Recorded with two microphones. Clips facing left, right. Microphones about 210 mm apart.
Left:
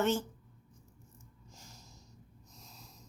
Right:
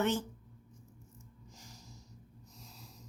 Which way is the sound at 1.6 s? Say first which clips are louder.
Right 1 dB; 15° right (ahead or behind).